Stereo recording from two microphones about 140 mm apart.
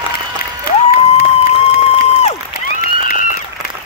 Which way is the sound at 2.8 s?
80° left.